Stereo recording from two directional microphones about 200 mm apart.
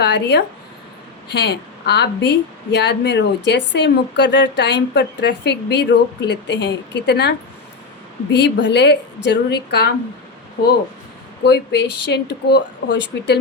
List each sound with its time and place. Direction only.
0.0 s a woman's voice: 60° left (ahead or behind)
11.4 s a woman's voice: 60° left (ahead or behind)